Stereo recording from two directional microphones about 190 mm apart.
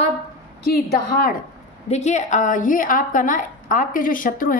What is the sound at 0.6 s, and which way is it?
Speech, 55° left (ahead or behind).